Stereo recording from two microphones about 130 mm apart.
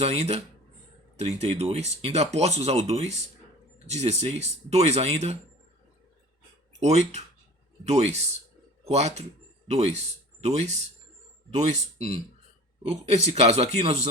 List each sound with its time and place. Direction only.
0.0 s speech: 55° right (ahead or behind)
6.7 s speech: 60° right (ahead or behind)